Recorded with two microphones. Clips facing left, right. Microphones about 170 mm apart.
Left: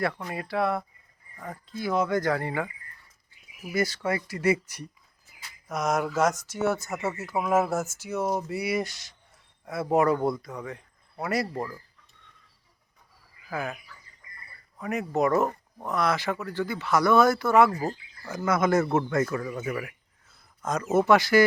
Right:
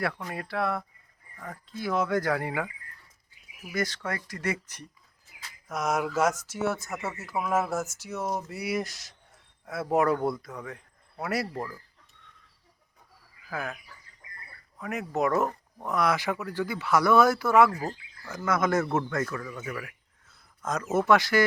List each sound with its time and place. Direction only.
0.2 s speech: centre (ahead or behind)
3.6 s speech: 5° left (ahead or behind)
5.4 s a sound: centre (ahead or behind)
6.1 s speech: 5° right (ahead or behind)
13.5 s speech: centre (ahead or behind)
14.8 s speech: centre (ahead or behind)
17.7 s speech: 15° left (ahead or behind)
18.2 s speech: 5° left (ahead or behind)
20.7 s speech: centre (ahead or behind)